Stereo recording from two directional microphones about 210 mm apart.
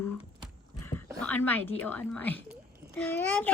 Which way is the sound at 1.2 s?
10° left (ahead or behind).